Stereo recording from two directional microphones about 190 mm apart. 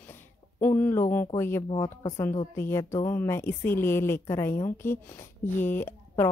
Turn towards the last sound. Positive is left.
turn(degrees=10)  # may be behind; listen again after turning